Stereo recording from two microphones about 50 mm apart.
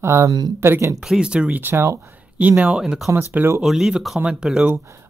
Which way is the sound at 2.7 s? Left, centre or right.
Centre.